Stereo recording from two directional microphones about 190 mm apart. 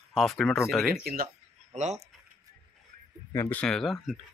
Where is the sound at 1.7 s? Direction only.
35° right (ahead or behind).